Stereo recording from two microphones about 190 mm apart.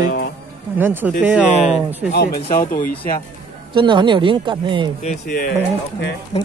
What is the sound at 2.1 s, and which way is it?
Speech, 50° left (ahead or behind).